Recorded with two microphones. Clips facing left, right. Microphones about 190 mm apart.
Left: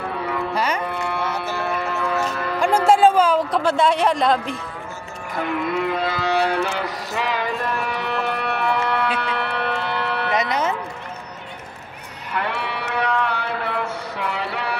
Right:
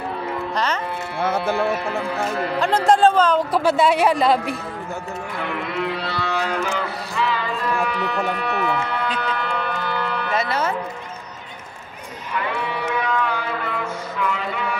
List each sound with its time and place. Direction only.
0.6 s music: 10° left (ahead or behind)
0.8 s music: 60° left (ahead or behind)
1.2 s music: 55° right (ahead or behind)
2.6 s a sound: 10° left (ahead or behind)
3.5 s speech: 5° right (ahead or behind)
5.6 s music: 50° left (ahead or behind)
6.4 s music: 65° left (ahead or behind)
8.3 s a sound: 65° left (ahead or behind)
10.3 s music: 20° left (ahead or behind)
12.4 s music: 70° left (ahead or behind)